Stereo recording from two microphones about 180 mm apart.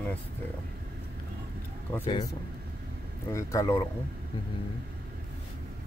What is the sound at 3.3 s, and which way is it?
Speech, 15° left (ahead or behind).